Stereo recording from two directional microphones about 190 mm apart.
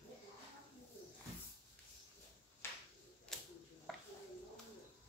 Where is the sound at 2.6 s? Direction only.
10° left (ahead or behind).